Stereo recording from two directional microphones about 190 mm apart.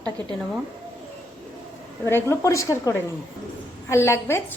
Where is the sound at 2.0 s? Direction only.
15° left (ahead or behind).